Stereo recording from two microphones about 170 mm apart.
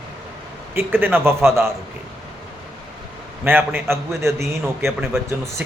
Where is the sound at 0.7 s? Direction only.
10° right (ahead or behind).